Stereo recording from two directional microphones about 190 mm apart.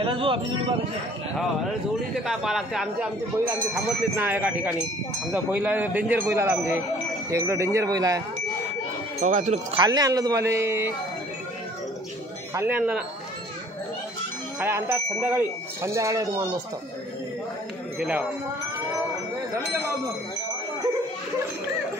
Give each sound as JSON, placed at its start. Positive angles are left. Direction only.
{"t": 0.0, "sound": "a man's voice", "side_deg": -25}
{"t": 2.2, "sound": "speech", "side_deg": 0}
{"t": 9.2, "sound": "speech", "side_deg": -40}
{"t": 9.8, "sound": "speech", "side_deg": -20}
{"t": 12.5, "sound": "speech", "side_deg": -10}
{"t": 14.6, "sound": "speech", "side_deg": -15}
{"t": 17.9, "sound": "speech", "side_deg": -5}